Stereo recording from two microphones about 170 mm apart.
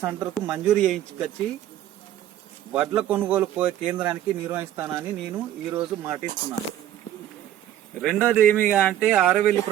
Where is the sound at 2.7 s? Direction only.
10° right (ahead or behind).